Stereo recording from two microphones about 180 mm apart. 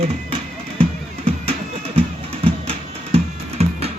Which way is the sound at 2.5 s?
35° right (ahead or behind).